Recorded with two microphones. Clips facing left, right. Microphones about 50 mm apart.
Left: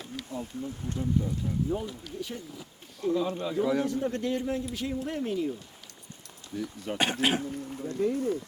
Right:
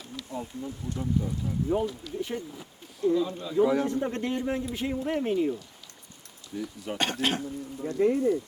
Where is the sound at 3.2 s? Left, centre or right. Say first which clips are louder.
Left 4 dB; left.